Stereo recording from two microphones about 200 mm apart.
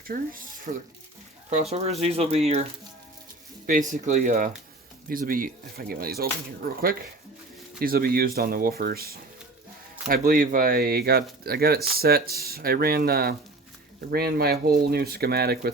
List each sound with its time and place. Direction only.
0.1 s speech: 45° right (ahead or behind)
1.7 s speech: 30° right (ahead or behind)
3.7 s speech: 40° right (ahead or behind)